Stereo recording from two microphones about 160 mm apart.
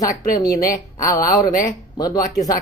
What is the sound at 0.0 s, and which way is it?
Speech, 20° left (ahead or behind).